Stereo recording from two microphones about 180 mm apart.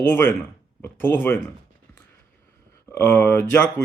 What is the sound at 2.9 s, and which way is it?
Speech, 10° left (ahead or behind).